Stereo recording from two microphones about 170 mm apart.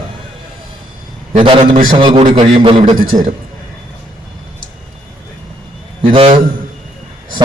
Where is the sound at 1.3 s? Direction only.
30° right (ahead or behind).